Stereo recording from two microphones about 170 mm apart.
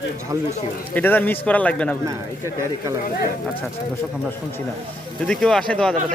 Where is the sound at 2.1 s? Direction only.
20° right (ahead or behind).